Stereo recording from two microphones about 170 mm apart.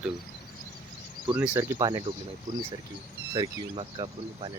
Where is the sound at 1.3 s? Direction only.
15° right (ahead or behind).